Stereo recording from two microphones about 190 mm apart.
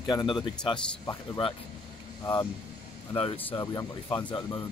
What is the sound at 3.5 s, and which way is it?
Speech, 15° left (ahead or behind).